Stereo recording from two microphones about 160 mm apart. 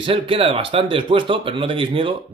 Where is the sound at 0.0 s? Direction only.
35° right (ahead or behind).